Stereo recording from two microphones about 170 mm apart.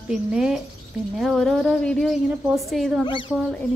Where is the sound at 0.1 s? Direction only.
5° right (ahead or behind).